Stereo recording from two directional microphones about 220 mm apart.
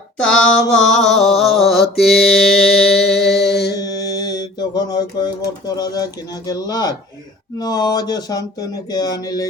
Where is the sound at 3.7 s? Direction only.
15° left (ahead or behind).